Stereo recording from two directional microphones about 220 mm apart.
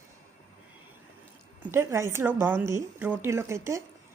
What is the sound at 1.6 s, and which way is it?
A woman's voice, 10° right (ahead or behind).